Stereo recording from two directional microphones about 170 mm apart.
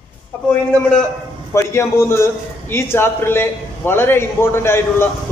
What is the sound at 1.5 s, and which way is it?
A man's voice, 15° left (ahead or behind).